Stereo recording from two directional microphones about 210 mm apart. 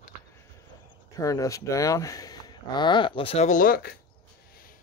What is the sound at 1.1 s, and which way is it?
Speech, 15° left (ahead or behind).